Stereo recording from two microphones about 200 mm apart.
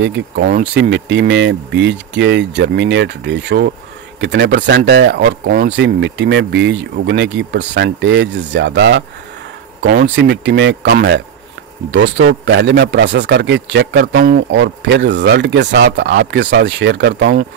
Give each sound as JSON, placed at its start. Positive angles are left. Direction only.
{"t": 0.0, "sound": "speech", "side_deg": -65}
{"t": 11.9, "sound": "speech", "side_deg": -70}